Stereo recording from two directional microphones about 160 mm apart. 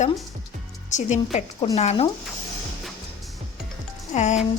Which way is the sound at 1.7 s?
40° left (ahead or behind).